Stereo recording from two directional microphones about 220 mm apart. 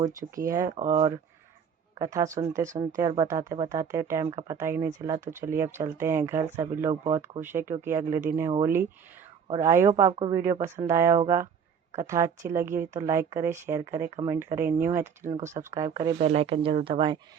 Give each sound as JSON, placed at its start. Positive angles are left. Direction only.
{"t": 0.0, "sound": "speech", "side_deg": -15}
{"t": 9.9, "sound": "speech", "side_deg": -25}
{"t": 10.3, "sound": "speech", "side_deg": -10}
{"t": 16.1, "sound": "speech", "side_deg": -30}